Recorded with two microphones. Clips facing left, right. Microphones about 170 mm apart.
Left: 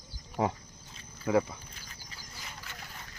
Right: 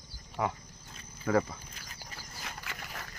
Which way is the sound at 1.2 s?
10° left (ahead or behind).